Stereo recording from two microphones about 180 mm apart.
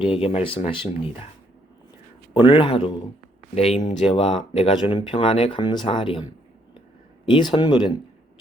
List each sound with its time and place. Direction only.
0.0 s speech: 30° left (ahead or behind)
2.3 s speech: 30° left (ahead or behind)